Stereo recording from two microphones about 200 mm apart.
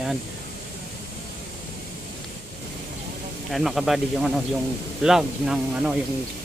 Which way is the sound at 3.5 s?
Centre (ahead or behind).